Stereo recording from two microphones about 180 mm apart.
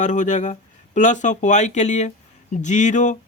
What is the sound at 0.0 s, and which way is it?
Speech, 45° left (ahead or behind).